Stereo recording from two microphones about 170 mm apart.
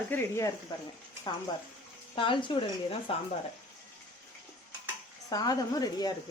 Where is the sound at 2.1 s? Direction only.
30° left (ahead or behind).